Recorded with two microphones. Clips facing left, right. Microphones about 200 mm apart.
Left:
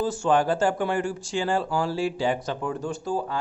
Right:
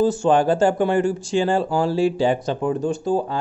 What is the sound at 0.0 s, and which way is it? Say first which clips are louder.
Speech: right 5 dB; 25° right (ahead or behind).